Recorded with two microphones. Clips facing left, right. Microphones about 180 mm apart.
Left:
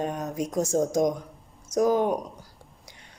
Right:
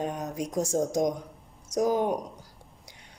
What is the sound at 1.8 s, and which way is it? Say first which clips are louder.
Speech: left 3 dB; 15° right (ahead or behind).